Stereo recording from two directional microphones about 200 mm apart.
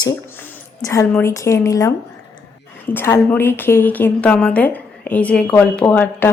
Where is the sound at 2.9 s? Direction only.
10° left (ahead or behind).